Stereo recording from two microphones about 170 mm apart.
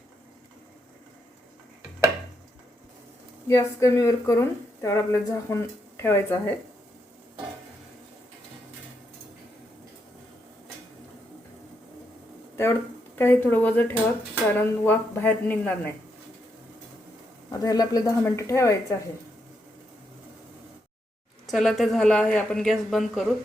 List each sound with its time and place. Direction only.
3.4 s a woman's voice: 15° left (ahead or behind)
13.1 s a woman's voice: 10° left (ahead or behind)
17.5 s speech: 20° left (ahead or behind)
21.4 s a woman's voice: centre (ahead or behind)